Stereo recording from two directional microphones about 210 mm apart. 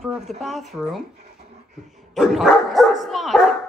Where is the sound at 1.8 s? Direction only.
Centre (ahead or behind).